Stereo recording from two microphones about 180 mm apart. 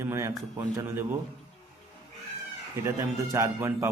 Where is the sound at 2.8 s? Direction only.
15° right (ahead or behind).